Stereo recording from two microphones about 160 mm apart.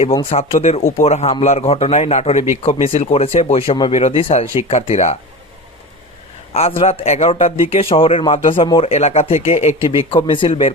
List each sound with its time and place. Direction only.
0.2 s a man's voice: 35° left (ahead or behind)
6.5 s a man's voice: 40° left (ahead or behind)